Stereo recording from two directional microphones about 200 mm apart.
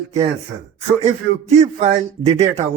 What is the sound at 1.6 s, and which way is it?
Speech, 35° right (ahead or behind).